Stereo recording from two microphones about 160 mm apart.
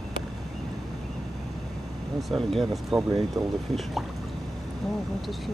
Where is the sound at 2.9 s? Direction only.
20° right (ahead or behind).